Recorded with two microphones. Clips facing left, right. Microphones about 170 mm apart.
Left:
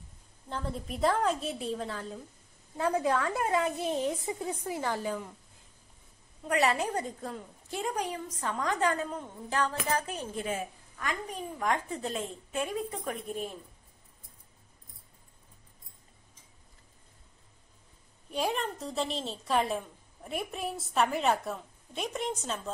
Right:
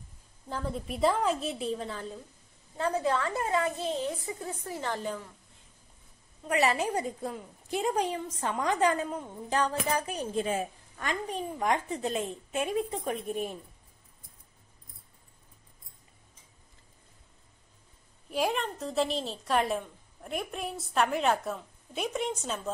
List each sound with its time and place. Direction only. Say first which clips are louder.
0.5 s a woman's voice: right 2 dB; 5° right (ahead or behind)
2.8 s a woman's voice: even; 15° left (ahead or behind)
6.4 s a woman's voice: right 1 dB; 5° right (ahead or behind)
7.8 s a woman's voice: right 4 dB; 25° right (ahead or behind)
11.0 s a woman's voice: right 3 dB; 25° right (ahead or behind)
18.3 s a woman's voice: right 2 dB; centre (ahead or behind)